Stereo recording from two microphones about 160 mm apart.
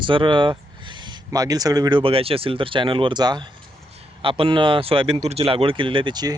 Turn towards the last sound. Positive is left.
turn(degrees=-25)  # may be behind; listen again after turning